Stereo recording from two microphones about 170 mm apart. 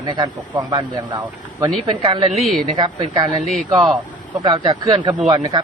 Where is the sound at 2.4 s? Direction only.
Centre (ahead or behind).